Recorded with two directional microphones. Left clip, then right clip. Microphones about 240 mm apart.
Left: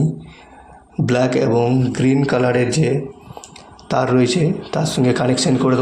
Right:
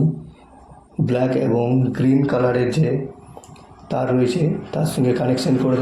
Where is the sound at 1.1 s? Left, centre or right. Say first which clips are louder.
Left 3 dB; centre.